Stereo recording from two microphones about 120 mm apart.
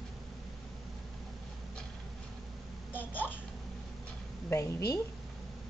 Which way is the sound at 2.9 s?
15° left (ahead or behind).